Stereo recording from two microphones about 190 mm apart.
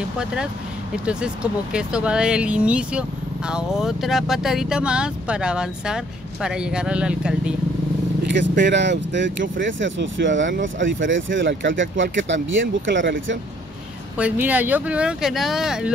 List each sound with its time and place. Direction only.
0.2 s speech: 5° right (ahead or behind)
8.3 s speech: 70° right (ahead or behind)
9.6 s speech: 80° right
14.1 s speech: 10° right (ahead or behind)